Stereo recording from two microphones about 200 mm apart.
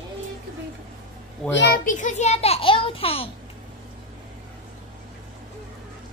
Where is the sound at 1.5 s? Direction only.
60° left (ahead or behind).